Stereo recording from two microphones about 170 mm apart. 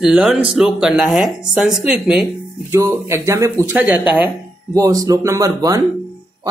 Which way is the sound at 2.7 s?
15° right (ahead or behind).